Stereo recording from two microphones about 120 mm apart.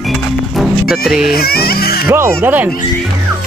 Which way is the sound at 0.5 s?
Centre (ahead or behind).